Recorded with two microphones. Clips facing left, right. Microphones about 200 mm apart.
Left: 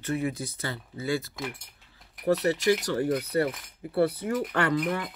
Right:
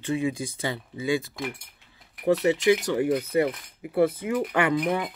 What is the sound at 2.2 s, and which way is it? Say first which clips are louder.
Speech: right 3 dB; 15° right (ahead or behind).